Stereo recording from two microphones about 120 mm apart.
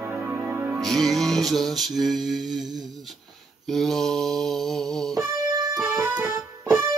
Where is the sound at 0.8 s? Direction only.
Centre (ahead or behind).